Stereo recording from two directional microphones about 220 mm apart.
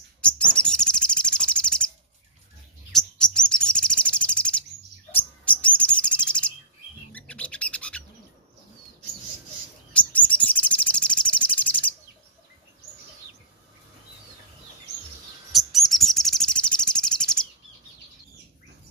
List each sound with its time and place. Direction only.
0.2 s bird: 5° left (ahead or behind)
2.9 s chirp: 5° left (ahead or behind)
5.4 s bird: 5° left (ahead or behind)
9.9 s bird: 5° left (ahead or behind)
15.5 s chirp: centre (ahead or behind)